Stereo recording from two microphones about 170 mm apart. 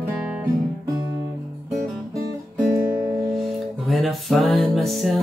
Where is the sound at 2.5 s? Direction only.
15° right (ahead or behind).